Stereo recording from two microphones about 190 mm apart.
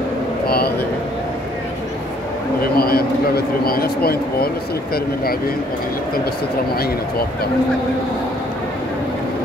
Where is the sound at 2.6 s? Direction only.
55° left (ahead or behind).